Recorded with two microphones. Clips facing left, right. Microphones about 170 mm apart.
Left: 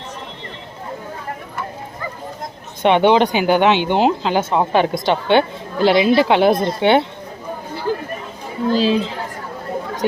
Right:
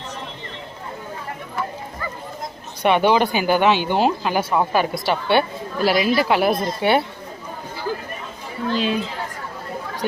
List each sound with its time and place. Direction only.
2.8 s speech: 20° left (ahead or behind)
8.7 s speech: 35° left (ahead or behind)